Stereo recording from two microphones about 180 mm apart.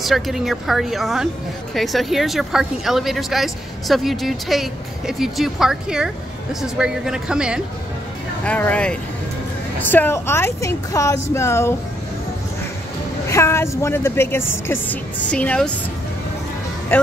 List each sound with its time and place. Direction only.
0.0 s speech: centre (ahead or behind)
8.5 s a woman's voice: 10° left (ahead or behind)
13.3 s a woman's voice: 15° left (ahead or behind)
16.9 s a woman's voice: 10° left (ahead or behind)